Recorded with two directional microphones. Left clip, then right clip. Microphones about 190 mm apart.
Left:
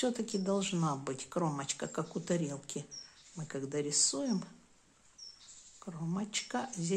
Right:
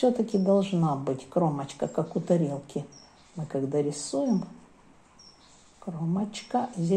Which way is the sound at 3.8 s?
15° left (ahead or behind).